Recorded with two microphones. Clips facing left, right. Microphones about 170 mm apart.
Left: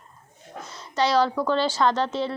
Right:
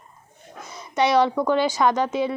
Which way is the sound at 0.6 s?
15° right (ahead or behind).